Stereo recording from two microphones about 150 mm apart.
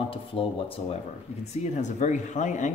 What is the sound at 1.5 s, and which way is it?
Speech, 50° left (ahead or behind).